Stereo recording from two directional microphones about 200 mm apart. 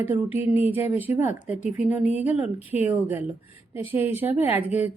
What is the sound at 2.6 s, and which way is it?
Speech, 35° left (ahead or behind).